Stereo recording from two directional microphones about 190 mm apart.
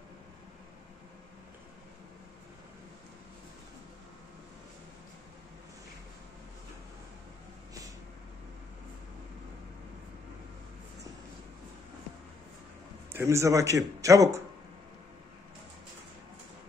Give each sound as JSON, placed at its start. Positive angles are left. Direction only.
{"t": 13.1, "sound": "speech", "side_deg": -15}